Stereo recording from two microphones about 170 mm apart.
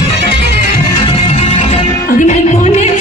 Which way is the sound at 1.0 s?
30° left (ahead or behind).